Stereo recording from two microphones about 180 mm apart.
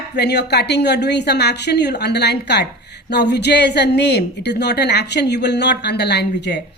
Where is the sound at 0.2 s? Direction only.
65° left (ahead or behind).